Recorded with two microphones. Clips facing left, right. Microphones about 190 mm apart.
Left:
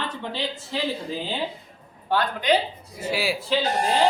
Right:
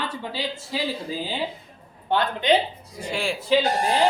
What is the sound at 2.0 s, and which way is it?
Speech, 25° right (ahead or behind).